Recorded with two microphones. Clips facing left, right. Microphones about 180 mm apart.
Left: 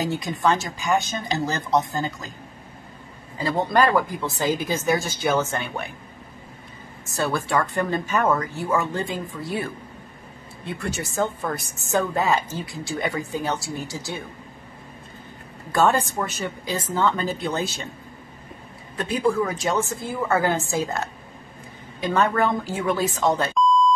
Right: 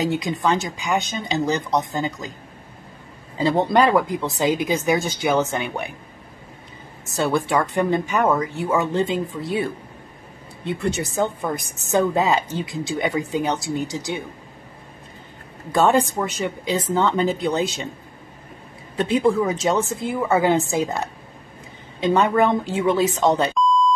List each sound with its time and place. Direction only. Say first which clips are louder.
0.0 s speech: right 2 dB; 20° right (ahead or behind)
3.3 s speech: right 3 dB; 20° right (ahead or behind)
7.1 s speech: right 4 dB; 20° right (ahead or behind)
10.6 s speech: right 6 dB; 20° right (ahead or behind)
15.9 s speech: right 4 dB; 15° right (ahead or behind)
18.9 s speech: right 4 dB; 25° right (ahead or behind)
23.5 s beep: even; centre (ahead or behind)